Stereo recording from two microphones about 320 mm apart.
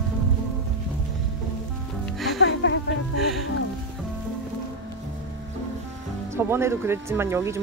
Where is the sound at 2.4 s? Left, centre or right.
Left.